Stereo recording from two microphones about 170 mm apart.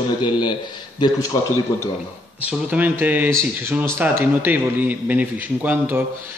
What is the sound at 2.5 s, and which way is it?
Speech, 10° right (ahead or behind).